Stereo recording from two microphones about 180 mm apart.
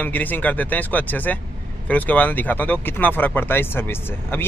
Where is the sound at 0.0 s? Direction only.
10° left (ahead or behind).